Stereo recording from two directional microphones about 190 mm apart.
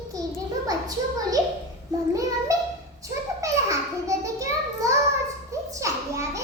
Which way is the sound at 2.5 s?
15° right (ahead or behind).